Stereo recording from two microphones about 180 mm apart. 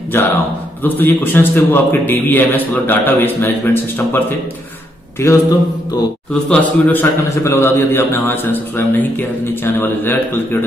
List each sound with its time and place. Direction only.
0.1 s a sound: 10° left (ahead or behind)
0.8 s a man's voice: 10° left (ahead or behind)
6.5 s a man's voice: 10° left (ahead or behind)